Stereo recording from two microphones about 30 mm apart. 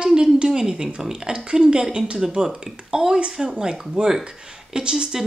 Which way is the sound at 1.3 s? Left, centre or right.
Right.